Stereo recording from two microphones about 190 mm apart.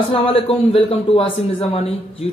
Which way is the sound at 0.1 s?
30° left (ahead or behind).